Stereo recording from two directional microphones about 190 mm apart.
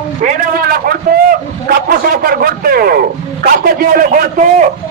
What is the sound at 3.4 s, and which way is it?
A man's voice, 50° right (ahead or behind).